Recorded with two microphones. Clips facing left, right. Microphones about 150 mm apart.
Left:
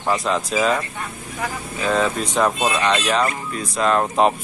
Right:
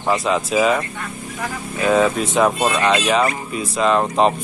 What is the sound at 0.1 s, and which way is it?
Speech, 5° right (ahead or behind).